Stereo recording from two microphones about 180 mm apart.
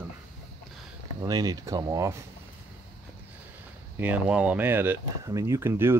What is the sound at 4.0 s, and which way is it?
Speech, 10° right (ahead or behind).